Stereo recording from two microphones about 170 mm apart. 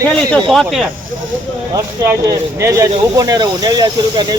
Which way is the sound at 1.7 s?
20° right (ahead or behind).